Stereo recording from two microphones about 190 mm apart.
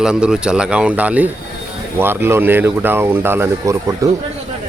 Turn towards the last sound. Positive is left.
turn(degrees=-15)  # may be behind; listen again after turning